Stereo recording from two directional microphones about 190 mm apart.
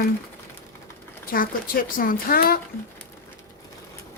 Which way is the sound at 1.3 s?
50° left (ahead or behind).